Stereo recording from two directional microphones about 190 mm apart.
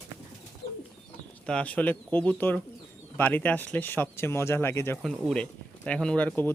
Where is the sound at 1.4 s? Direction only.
5° left (ahead or behind).